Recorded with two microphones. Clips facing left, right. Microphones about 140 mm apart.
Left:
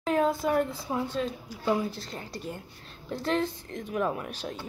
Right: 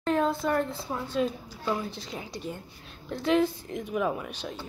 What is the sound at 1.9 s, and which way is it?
Speech, centre (ahead or behind).